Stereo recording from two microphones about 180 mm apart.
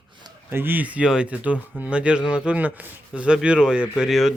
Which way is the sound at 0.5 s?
10° right (ahead or behind).